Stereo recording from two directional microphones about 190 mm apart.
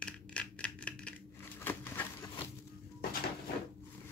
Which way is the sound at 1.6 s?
10° left (ahead or behind).